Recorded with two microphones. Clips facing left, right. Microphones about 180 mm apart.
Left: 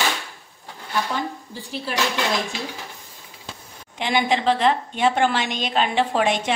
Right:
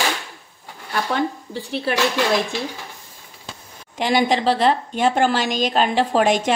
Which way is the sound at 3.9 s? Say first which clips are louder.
Right 3 dB; 40° right (ahead or behind).